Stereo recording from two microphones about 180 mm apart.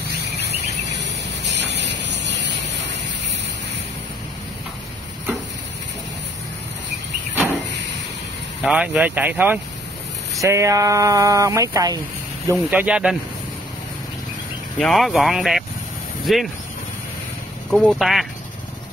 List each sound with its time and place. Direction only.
1.0 s vehicle: 75° right (ahead or behind)
8.6 s speech: 5° right (ahead or behind)
12.4 s speech: 10° right (ahead or behind)
14.8 s speech: centre (ahead or behind)
17.6 s speech: centre (ahead or behind)